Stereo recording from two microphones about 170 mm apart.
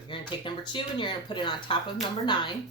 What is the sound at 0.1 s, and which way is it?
Speech, 30° left (ahead or behind).